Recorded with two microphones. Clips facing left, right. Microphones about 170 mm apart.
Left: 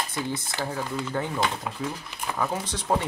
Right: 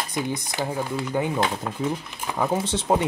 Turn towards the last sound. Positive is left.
turn(degrees=-25)  # may be behind; listen again after turning